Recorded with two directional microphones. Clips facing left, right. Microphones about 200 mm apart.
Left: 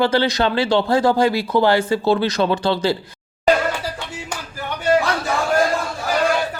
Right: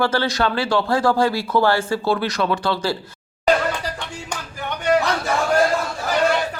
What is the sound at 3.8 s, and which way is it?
Music, 5° left (ahead or behind).